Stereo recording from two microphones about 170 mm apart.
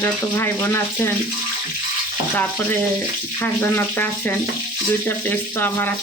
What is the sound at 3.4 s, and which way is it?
Speech, 15° left (ahead or behind).